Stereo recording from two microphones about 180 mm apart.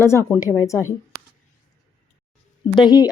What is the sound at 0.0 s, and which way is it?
Speech, 15° left (ahead or behind).